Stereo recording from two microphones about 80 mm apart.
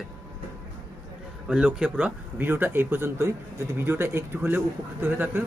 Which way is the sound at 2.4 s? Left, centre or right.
Right.